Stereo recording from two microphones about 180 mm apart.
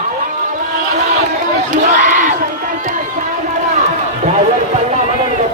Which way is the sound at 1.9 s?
45° right (ahead or behind).